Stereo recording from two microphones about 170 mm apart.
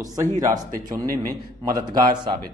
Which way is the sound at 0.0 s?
20° right (ahead or behind).